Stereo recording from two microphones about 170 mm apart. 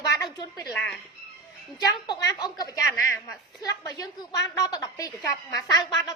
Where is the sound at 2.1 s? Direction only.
20° left (ahead or behind).